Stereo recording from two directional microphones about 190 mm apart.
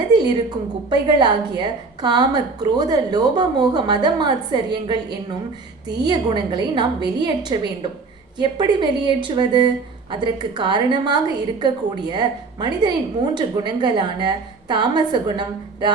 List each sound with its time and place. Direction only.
0.1 s a woman's voice: 20° right (ahead or behind)